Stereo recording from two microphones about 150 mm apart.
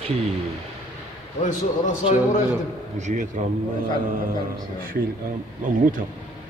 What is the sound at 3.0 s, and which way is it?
Speech, 55° right (ahead or behind).